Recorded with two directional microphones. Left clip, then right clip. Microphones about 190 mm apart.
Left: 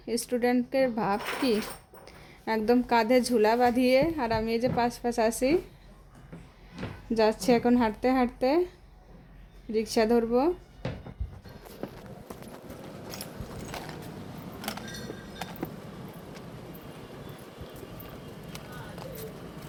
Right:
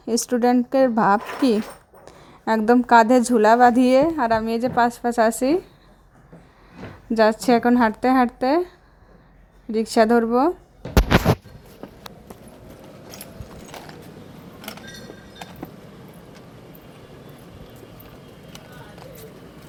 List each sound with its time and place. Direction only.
0.0 s speech: 30° right (ahead or behind)
7.1 s speech: 20° right (ahead or behind)
9.7 s speech: 25° right (ahead or behind)